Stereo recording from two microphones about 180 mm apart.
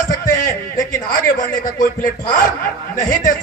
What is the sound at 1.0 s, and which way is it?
Speech, 50° left (ahead or behind).